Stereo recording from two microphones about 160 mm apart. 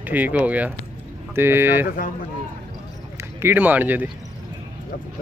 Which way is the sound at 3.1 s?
15° right (ahead or behind).